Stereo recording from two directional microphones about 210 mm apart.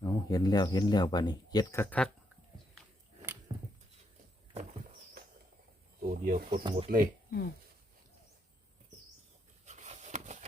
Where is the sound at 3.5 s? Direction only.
20° right (ahead or behind).